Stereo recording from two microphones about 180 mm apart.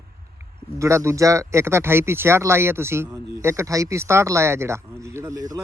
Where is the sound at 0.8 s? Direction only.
15° right (ahead or behind).